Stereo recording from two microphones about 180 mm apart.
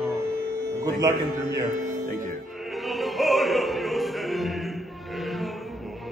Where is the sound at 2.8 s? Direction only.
Centre (ahead or behind).